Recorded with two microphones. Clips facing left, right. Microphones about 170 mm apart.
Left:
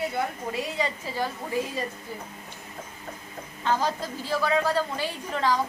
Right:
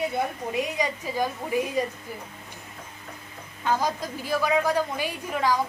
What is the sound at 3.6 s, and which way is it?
A woman's voice, 10° right (ahead or behind).